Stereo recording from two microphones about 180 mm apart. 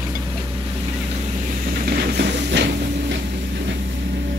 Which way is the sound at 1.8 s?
65° right (ahead or behind).